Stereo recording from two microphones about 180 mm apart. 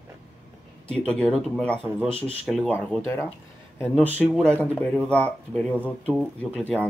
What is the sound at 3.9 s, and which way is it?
Speech, 10° right (ahead or behind).